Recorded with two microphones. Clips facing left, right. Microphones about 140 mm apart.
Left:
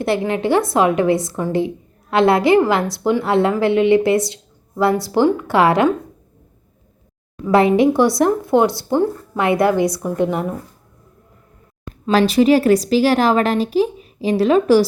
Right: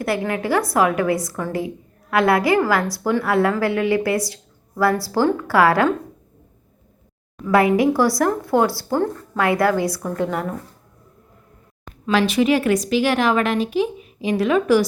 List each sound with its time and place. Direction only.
0.0 s a woman's voice: 25° left (ahead or behind)
7.4 s a woman's voice: 25° left (ahead or behind)
12.0 s a woman's voice: 35° left (ahead or behind)